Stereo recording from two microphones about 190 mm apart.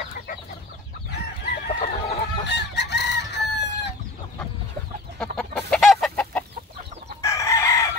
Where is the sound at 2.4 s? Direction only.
65° left (ahead or behind).